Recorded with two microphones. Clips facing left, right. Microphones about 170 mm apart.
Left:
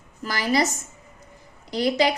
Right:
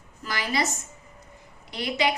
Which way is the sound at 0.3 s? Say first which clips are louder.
Left 6 dB; 40° left (ahead or behind).